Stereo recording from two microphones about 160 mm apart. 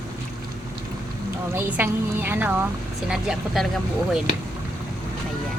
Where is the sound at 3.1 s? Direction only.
5° right (ahead or behind).